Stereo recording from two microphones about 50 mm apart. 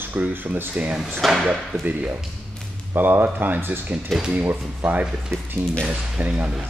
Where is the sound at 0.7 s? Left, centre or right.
Right.